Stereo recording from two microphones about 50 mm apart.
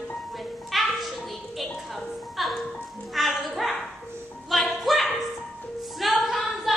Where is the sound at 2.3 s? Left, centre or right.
Centre.